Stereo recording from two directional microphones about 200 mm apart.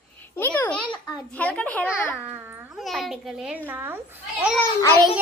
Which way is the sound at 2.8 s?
Centre (ahead or behind).